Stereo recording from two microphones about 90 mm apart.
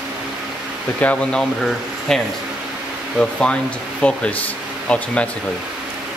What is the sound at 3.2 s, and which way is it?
Speech, 10° left (ahead or behind).